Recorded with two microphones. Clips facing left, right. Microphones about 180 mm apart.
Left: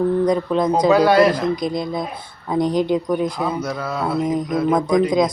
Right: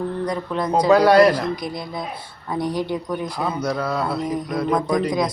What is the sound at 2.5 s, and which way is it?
Speech, 20° left (ahead or behind).